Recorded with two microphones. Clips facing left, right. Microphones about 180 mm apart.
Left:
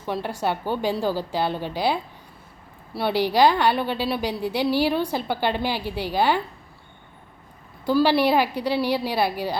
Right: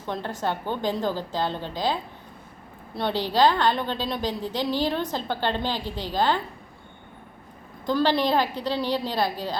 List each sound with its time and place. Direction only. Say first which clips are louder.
0.1 s a woman's voice: left 3 dB; 10° left (ahead or behind)
7.9 s a woman's voice: left 3 dB; 10° left (ahead or behind)